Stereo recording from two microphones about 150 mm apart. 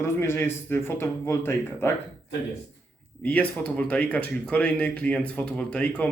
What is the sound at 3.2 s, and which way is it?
Speech, 10° left (ahead or behind).